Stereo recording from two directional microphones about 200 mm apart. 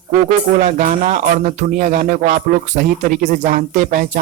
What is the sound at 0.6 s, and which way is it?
Music, 40° right (ahead or behind).